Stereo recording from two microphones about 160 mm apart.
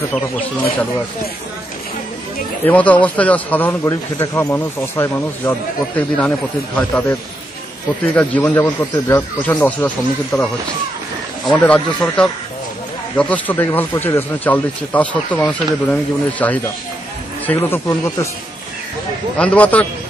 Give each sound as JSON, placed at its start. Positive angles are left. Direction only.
{"t": 0.1, "sound": "speech", "side_deg": 10}
{"t": 2.6, "sound": "speech", "side_deg": 10}
{"t": 11.5, "sound": "speech", "side_deg": 10}
{"t": 19.3, "sound": "speech", "side_deg": 10}